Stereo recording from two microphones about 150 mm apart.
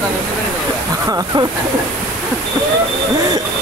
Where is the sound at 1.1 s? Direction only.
25° right (ahead or behind).